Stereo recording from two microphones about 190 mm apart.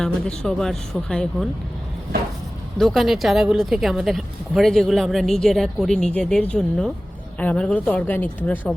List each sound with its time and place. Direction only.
0.0 s speech: 5° left (ahead or behind)
2.7 s a woman's voice: centre (ahead or behind)